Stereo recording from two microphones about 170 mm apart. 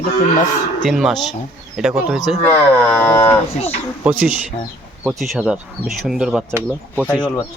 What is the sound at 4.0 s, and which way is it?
Speech, 10° right (ahead or behind).